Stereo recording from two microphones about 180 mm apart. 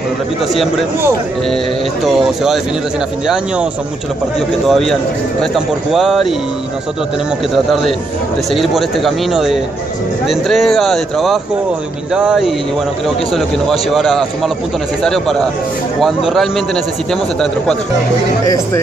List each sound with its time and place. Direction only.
2.1 s a man's voice: centre (ahead or behind)
4.6 s a man's voice: centre (ahead or behind)
7.5 s a man's voice: centre (ahead or behind)
18.4 s speech: 20° left (ahead or behind)